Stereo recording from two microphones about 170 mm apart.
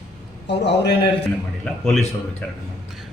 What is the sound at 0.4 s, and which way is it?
Speech, 90° left.